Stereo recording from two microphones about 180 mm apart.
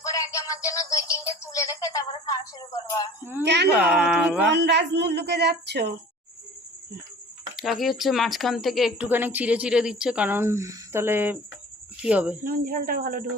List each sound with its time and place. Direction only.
0.0 s synthetic singing: 20° left (ahead or behind)
3.4 s speech: 70° right (ahead or behind)
3.8 s speech: 5° right (ahead or behind)
4.4 s speech: 70° right (ahead or behind)
7.5 s speech: centre (ahead or behind)
9.0 s speech: 10° right (ahead or behind)
12.5 s speech: 50° right (ahead or behind)